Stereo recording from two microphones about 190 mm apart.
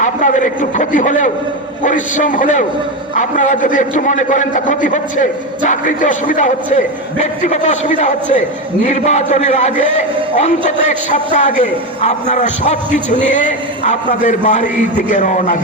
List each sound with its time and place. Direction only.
0.0 s a man's voice: 40° left (ahead or behind)
11.3 s a man's voice: 40° left (ahead or behind)